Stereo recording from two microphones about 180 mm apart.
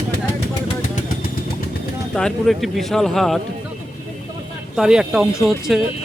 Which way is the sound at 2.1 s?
5° left (ahead or behind).